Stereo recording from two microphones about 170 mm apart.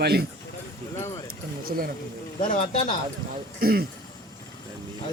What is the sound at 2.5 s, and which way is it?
Speech, 45° left (ahead or behind).